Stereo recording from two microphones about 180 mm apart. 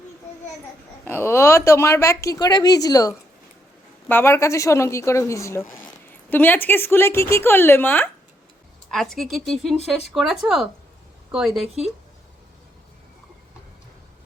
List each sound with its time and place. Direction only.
1.0 s speech: 10° left (ahead or behind)